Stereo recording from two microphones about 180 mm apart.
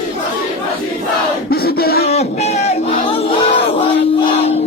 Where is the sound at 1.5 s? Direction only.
60° left (ahead or behind).